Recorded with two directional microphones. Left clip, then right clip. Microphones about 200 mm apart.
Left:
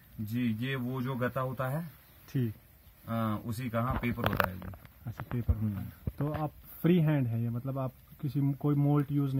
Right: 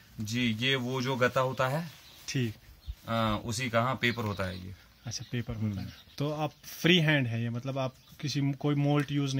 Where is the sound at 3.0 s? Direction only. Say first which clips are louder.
Right 5 dB; 40° right (ahead or behind).